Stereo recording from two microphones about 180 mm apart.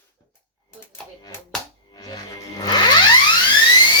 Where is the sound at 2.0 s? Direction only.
20° left (ahead or behind).